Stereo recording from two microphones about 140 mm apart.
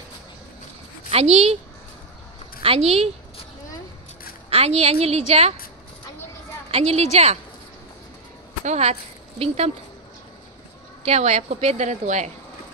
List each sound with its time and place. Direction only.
1.1 s a woman's voice: 50° right (ahead or behind)
2.6 s a woman's voice: 45° right (ahead or behind)
4.5 s a woman's voice: 45° right (ahead or behind)
6.7 s a woman's voice: 50° right (ahead or behind)
8.6 s a woman's voice: 50° right (ahead or behind)
11.1 s a woman's voice: 50° right (ahead or behind)